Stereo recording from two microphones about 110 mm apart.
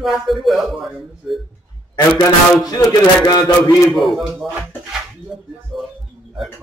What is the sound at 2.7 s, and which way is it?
Speech, 35° left (ahead or behind).